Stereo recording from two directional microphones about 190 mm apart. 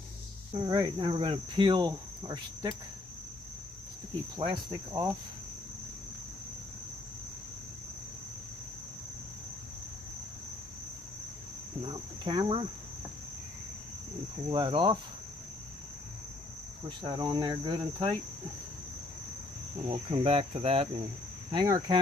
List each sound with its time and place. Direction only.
0.7 s cricket: 20° right (ahead or behind)
4.4 s cricket: 20° right (ahead or behind)
11.8 s cricket: 25° right (ahead or behind)
14.5 s cricket: 25° right (ahead or behind)
17.0 s cricket: 25° right (ahead or behind)
19.9 s cricket: 30° right (ahead or behind)
21.5 s cricket: 20° right (ahead or behind)